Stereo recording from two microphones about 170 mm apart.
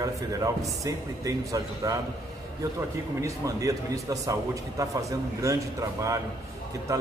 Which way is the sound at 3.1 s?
20° right (ahead or behind).